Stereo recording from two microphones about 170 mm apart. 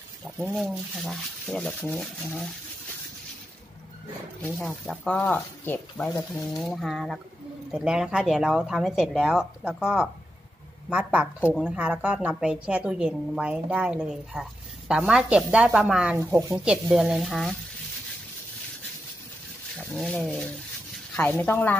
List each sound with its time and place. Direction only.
0.6 s speech: centre (ahead or behind)
4.6 s a woman's voice: 10° left (ahead or behind)
16.2 s a woman's voice: 15° right (ahead or behind)
16.9 s speech: 5° right (ahead or behind)
19.8 s speech: 5° left (ahead or behind)